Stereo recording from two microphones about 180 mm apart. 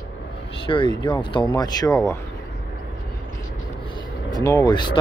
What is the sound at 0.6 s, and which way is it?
Speech, 25° left (ahead or behind).